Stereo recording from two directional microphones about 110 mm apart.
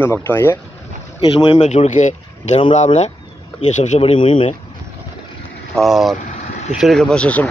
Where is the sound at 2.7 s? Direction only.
75° left (ahead or behind); by 4.5 s 55° left (ahead or behind).